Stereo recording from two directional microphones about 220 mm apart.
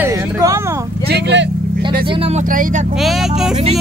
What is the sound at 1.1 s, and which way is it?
Speech, 50° right (ahead or behind).